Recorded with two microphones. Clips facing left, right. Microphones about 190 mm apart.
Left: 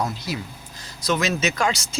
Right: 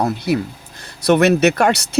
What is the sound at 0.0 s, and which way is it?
Speech, 60° right (ahead or behind).